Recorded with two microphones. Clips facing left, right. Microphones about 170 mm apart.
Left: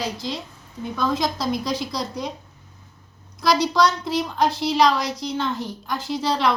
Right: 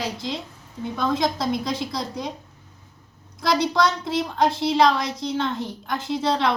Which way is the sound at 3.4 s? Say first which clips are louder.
Left 2 dB; 25° right (ahead or behind).